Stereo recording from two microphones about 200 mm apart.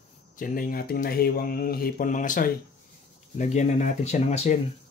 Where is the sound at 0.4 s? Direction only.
45° left (ahead or behind).